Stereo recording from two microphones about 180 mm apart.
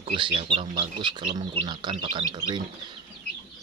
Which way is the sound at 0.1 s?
30° right (ahead or behind).